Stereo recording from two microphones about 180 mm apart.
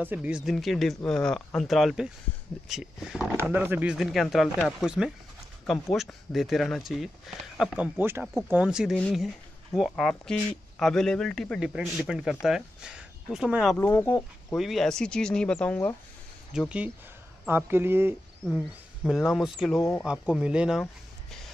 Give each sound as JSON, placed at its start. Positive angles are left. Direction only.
{"t": 0.0, "sound": "speech", "side_deg": -10}
{"t": 13.7, "sound": "speech", "side_deg": 15}
{"t": 14.5, "sound": "speech", "side_deg": 0}
{"t": 16.5, "sound": "speech", "side_deg": -5}
{"t": 19.0, "sound": "speech", "side_deg": 0}
{"t": 19.8, "sound": "speech", "side_deg": 15}
{"t": 20.1, "sound": "speech", "side_deg": -5}